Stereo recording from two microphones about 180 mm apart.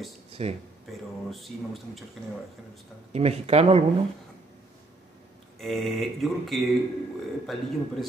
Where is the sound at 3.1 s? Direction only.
35° right (ahead or behind).